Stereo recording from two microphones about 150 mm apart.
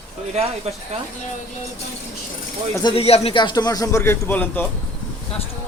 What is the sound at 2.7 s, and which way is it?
Speech, 30° left (ahead or behind).